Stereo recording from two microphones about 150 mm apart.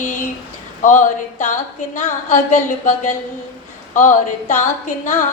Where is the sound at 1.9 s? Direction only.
50° left (ahead or behind).